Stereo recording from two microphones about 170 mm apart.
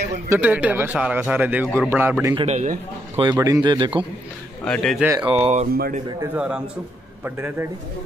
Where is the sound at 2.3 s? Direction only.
40° right (ahead or behind).